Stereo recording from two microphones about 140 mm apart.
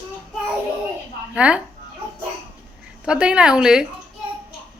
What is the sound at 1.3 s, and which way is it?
Speech, 5° right (ahead or behind).